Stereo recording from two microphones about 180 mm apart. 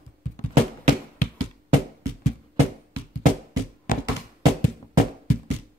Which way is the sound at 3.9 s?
50° left (ahead or behind).